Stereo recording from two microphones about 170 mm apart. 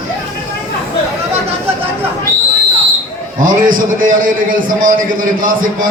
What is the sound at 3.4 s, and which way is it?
A man's voice, 50° right (ahead or behind).